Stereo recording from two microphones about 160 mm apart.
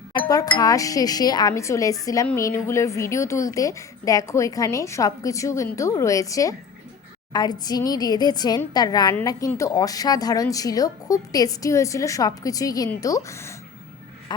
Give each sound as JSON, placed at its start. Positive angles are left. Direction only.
{"t": 0.5, "sound": "speech", "side_deg": 20}
{"t": 14.3, "sound": "music", "side_deg": 25}